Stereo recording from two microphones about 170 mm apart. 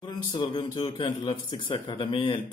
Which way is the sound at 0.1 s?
25° left (ahead or behind).